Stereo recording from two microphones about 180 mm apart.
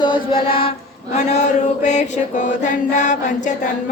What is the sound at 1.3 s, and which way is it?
Mantra, 40° left (ahead or behind).